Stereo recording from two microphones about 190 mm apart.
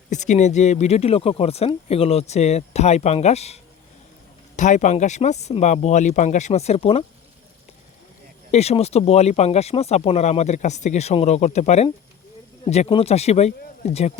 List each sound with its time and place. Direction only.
0.1 s speech: 40° left (ahead or behind)
8.5 s speech: 35° left (ahead or behind)